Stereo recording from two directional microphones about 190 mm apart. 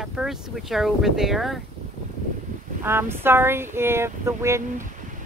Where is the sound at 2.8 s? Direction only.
10° right (ahead or behind).